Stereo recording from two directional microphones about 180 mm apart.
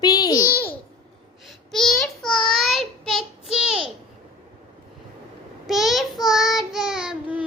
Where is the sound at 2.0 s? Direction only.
5° left (ahead or behind).